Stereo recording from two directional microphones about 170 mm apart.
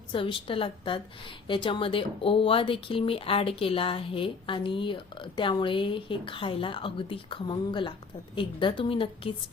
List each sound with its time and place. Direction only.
0.1 s a woman's voice: 30° left (ahead or behind)